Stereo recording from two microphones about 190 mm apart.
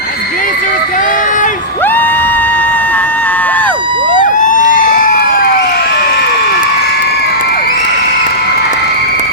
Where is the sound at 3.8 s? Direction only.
25° right (ahead or behind).